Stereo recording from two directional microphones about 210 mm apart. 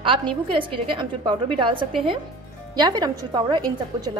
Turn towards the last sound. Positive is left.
turn(degrees=-20)  # may be behind; listen again after turning